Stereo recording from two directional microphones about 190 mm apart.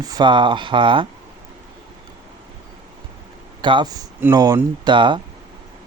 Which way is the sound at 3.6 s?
25° right (ahead or behind).